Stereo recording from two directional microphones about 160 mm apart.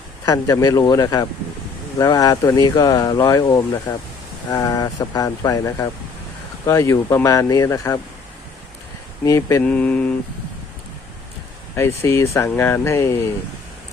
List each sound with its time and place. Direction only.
0.3 s speech: 20° left (ahead or behind)
9.2 s speech: 20° left (ahead or behind)
9.6 s speech: 10° left (ahead or behind)
11.8 s speech: 15° left (ahead or behind)